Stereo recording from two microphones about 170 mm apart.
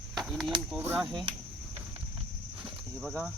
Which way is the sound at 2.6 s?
Centre (ahead or behind).